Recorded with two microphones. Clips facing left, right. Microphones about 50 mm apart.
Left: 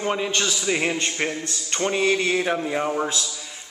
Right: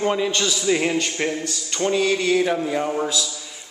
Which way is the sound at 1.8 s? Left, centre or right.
Left.